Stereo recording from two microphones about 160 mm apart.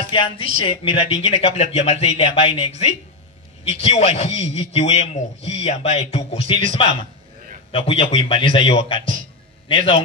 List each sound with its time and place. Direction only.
0.1 s a man's voice: 35° left (ahead or behind)